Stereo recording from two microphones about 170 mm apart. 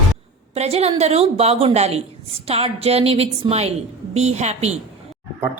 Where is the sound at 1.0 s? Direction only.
40° right (ahead or behind).